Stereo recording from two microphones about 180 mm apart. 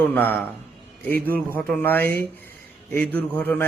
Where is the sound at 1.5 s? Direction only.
10° left (ahead or behind).